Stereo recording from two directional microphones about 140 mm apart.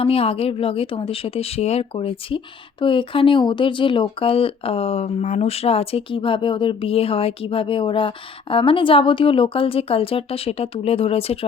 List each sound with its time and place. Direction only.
0.0 s speech: 45° left (ahead or behind)